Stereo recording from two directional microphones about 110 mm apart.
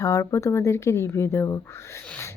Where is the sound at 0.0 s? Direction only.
30° left (ahead or behind).